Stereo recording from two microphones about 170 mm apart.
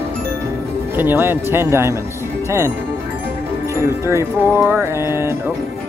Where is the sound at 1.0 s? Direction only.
15° right (ahead or behind).